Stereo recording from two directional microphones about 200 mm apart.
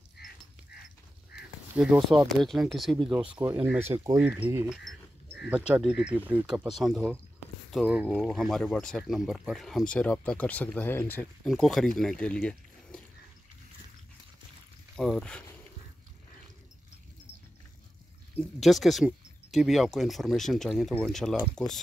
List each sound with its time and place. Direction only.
0.2 s livestock: 55° left (ahead or behind)
1.8 s speech: 5° right (ahead or behind)
3.4 s speech: 15° right (ahead or behind)
5.8 s speech: 5° right (ahead or behind)
15.0 s speech: 5° left (ahead or behind)
18.3 s speech: centre (ahead or behind)